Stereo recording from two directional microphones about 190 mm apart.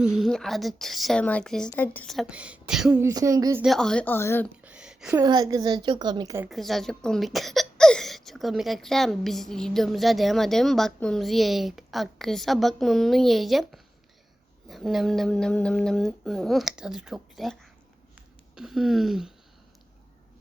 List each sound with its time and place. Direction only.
0.0 s speech: centre (ahead or behind)
3.0 s speech: 15° right (ahead or behind)
3.6 s a woman's voice: centre (ahead or behind)
4.6 s a sound: 5° right (ahead or behind)
5.2 s a woman's voice: 20° right (ahead or behind)
6.5 s speech: centre (ahead or behind)